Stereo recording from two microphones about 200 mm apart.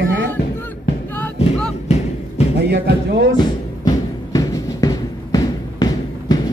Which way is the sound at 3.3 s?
20° left (ahead or behind).